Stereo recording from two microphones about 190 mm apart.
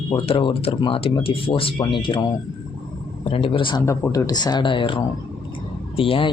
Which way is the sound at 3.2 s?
30° left (ahead or behind).